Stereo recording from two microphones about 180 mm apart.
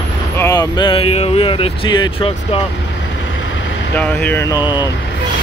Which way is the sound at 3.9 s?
10° left (ahead or behind).